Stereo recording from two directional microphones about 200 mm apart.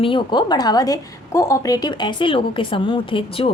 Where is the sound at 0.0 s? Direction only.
25° left (ahead or behind).